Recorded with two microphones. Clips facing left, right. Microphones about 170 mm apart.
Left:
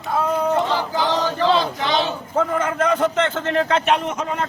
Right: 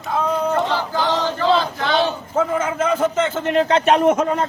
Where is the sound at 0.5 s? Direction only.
10° left (ahead or behind).